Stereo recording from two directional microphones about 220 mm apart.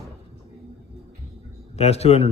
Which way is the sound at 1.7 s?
30° left (ahead or behind).